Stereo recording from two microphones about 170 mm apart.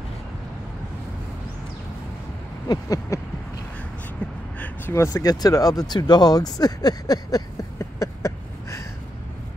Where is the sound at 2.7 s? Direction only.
20° left (ahead or behind).